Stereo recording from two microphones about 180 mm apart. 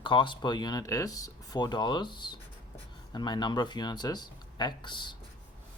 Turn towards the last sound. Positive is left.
turn(degrees=25)  # may be behind; listen again after turning